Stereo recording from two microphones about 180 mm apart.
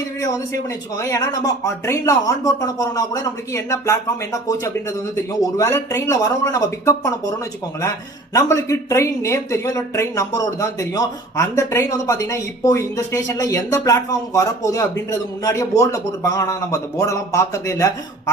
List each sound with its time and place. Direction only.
0.2 s speech: 20° left (ahead or behind)